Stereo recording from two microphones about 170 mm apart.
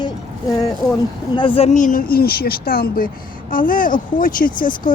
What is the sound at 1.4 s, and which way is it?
Speech, 30° left (ahead or behind).